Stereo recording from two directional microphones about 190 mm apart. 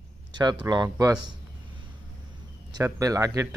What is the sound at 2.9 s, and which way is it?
Speech, 15° right (ahead or behind).